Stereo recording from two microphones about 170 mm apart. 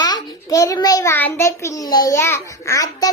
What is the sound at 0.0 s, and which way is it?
A child's voice, 20° left (ahead or behind).